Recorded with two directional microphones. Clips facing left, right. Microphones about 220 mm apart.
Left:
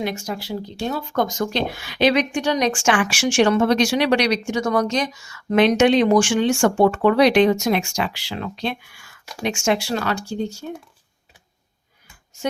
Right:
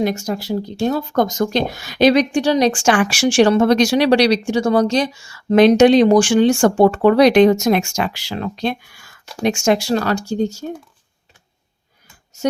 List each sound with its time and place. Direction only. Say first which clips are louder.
0.0 s speech: right 6 dB; 40° right (ahead or behind)